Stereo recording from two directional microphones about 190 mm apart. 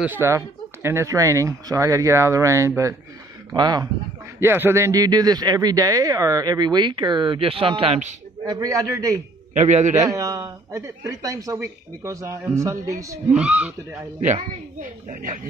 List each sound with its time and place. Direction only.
0.0 s a man's voice: 10° right (ahead or behind); by 8.1 s 30° right (ahead or behind)
8.5 s speech: 20° right (ahead or behind)
9.5 s a man's voice: 40° right (ahead or behind)
9.9 s a man's voice: 15° right (ahead or behind)
13.3 s speech: 5° right (ahead or behind)
14.2 s a woman's voice: 40° right (ahead or behind)